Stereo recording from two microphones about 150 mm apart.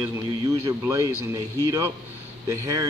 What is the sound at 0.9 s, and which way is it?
A man's voice, 25° right (ahead or behind).